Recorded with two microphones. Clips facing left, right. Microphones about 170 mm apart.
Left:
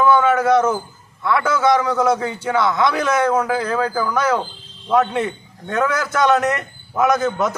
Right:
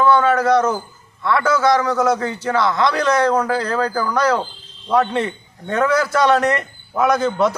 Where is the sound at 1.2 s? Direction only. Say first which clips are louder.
Right 1 dB; 5° left (ahead or behind).